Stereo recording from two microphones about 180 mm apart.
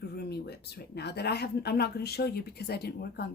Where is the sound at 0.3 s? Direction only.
65° left (ahead or behind).